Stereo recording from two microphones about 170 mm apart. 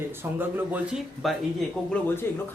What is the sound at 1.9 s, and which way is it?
Speech, 10° left (ahead or behind).